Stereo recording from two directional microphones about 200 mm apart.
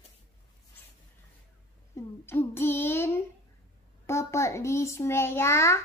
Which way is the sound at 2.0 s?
10° left (ahead or behind).